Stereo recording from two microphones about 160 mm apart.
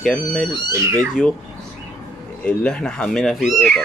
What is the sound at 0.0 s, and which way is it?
Speech, 5° left (ahead or behind).